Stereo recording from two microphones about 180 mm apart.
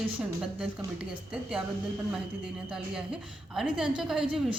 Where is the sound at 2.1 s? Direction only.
5° right (ahead or behind).